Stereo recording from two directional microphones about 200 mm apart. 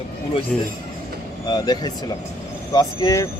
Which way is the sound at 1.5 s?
20° left (ahead or behind).